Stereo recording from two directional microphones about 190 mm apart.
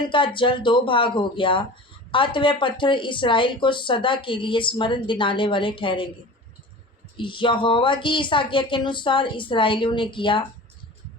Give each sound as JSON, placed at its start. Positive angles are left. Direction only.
{"t": 0.1, "sound": "speech", "side_deg": 25}
{"t": 7.2, "sound": "speech", "side_deg": 25}